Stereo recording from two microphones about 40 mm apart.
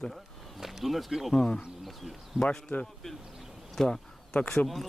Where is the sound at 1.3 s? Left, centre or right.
Centre.